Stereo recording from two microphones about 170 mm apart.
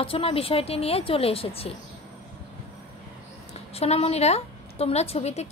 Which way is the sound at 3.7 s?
35° left (ahead or behind).